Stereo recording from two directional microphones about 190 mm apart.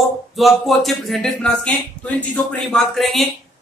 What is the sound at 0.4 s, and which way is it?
A woman's voice, centre (ahead or behind).